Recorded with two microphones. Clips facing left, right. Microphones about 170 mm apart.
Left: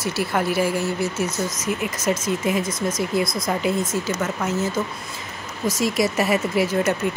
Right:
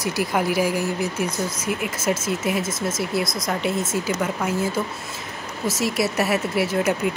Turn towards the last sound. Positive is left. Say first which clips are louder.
# left 1 dB
turn(degrees=-5)  # may be behind; listen again after turning